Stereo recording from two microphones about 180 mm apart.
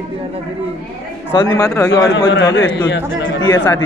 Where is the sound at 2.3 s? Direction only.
85° left.